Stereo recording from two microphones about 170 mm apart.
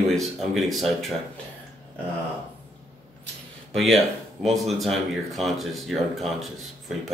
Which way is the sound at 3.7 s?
Centre (ahead or behind).